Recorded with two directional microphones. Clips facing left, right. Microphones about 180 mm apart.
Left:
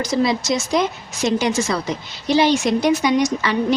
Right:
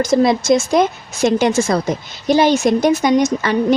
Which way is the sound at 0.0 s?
50° right (ahead or behind).